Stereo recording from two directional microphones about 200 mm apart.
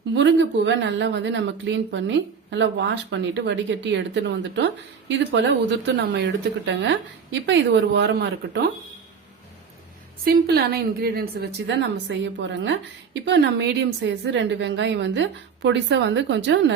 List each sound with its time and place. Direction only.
0.1 s speech: 65° right (ahead or behind)
10.2 s a woman's voice: 55° right (ahead or behind)
11.6 s speech: 65° right (ahead or behind)